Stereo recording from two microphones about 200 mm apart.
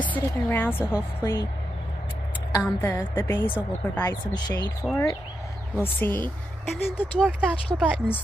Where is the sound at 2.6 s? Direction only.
10° left (ahead or behind).